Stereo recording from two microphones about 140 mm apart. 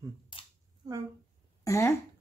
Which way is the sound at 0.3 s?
35° left (ahead or behind).